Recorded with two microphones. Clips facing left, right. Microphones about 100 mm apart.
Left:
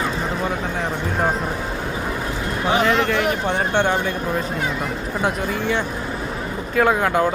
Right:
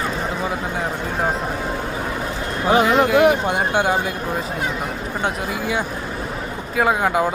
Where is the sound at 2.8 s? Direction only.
5° right (ahead or behind).